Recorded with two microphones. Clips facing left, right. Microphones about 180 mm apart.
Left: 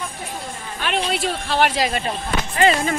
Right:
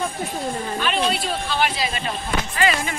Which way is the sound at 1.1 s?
85° left.